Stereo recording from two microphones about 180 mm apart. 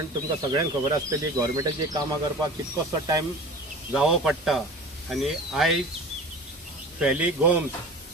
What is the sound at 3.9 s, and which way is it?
Speech, 5° right (ahead or behind).